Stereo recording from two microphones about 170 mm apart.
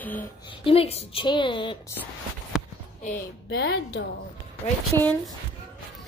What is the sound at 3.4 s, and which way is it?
Speech, 85° left.